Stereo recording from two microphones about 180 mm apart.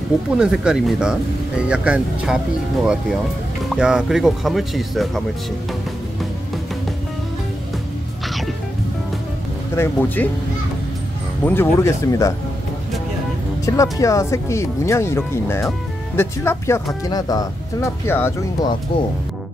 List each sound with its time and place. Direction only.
0.4 s speech: 5° right (ahead or behind)
9.8 s speech: 10° left (ahead or behind)
11.4 s speech: 10° left (ahead or behind)
13.7 s speech: 15° left (ahead or behind)